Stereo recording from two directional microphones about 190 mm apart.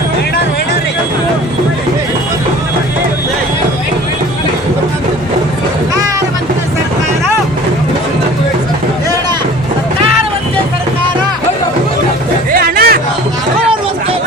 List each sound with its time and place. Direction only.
12.5 s hubbub: 50° right (ahead or behind)